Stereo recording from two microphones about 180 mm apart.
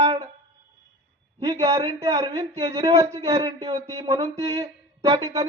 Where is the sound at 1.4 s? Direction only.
20° right (ahead or behind).